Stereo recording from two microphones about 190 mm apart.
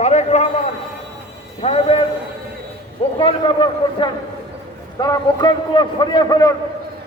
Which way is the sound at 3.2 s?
25° left (ahead or behind).